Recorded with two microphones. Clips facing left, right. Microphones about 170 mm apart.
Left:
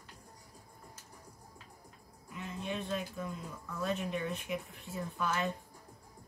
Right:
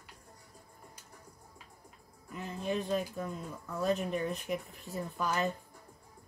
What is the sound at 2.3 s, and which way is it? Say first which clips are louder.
Speech: right 4 dB; 35° right (ahead or behind).